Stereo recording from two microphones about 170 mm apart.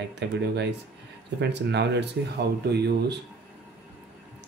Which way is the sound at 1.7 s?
85° right.